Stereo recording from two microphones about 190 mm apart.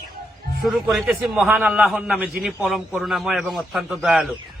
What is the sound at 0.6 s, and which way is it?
A man's voice, centre (ahead or behind).